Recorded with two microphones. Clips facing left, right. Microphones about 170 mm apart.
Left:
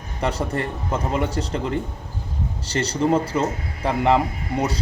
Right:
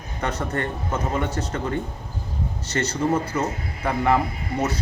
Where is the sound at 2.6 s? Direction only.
30° left (ahead or behind).